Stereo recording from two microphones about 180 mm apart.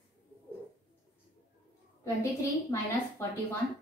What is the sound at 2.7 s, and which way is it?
Speech, 15° left (ahead or behind).